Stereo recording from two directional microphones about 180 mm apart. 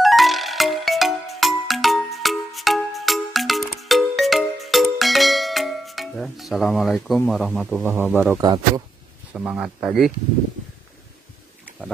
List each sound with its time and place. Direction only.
0.0 s music: centre (ahead or behind)
7.2 s a man's voice: centre (ahead or behind)
8.4 s speech: 20° right (ahead or behind)
9.3 s a man's voice: 5° right (ahead or behind)